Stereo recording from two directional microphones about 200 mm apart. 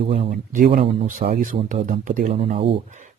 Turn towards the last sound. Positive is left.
turn(degrees=-40)  # may be behind; listen again after turning